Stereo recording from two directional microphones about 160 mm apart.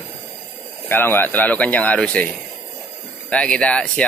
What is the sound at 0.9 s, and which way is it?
Speech, 15° left (ahead or behind).